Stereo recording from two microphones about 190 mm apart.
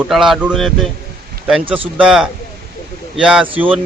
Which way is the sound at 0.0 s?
Centre (ahead or behind).